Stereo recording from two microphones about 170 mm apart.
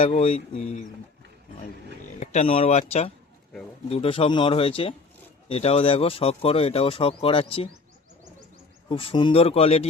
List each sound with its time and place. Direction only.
0.0 s speech: 35° left (ahead or behind)
2.2 s speech: 40° left (ahead or behind)
8.9 s speech: 30° left (ahead or behind)